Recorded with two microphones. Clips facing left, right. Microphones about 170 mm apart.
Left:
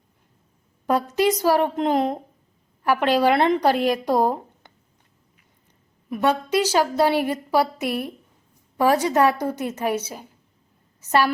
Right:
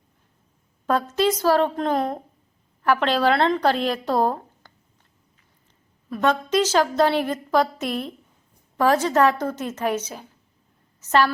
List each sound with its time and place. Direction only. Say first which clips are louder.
0.9 s a woman's voice: left 1 dB; 15° left (ahead or behind)
6.1 s a woman's voice: even; 15° left (ahead or behind)